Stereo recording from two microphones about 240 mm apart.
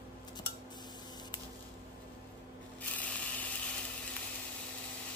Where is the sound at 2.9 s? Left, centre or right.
Centre.